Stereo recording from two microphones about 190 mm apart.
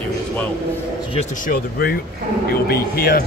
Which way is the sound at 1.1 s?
45° left (ahead or behind).